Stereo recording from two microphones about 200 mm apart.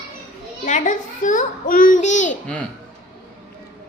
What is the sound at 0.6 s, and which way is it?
A child's voice, 40° left (ahead or behind).